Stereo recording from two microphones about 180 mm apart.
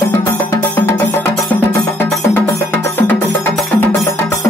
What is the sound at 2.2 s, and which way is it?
Music, 15° left (ahead or behind).